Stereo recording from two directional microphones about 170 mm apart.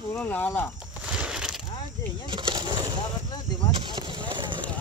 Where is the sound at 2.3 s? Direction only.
25° right (ahead or behind).